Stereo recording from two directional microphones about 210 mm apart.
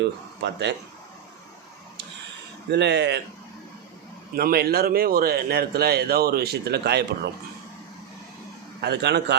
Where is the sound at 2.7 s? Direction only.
55° right (ahead or behind).